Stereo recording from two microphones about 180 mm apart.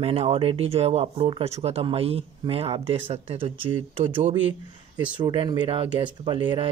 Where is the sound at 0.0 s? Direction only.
35° right (ahead or behind).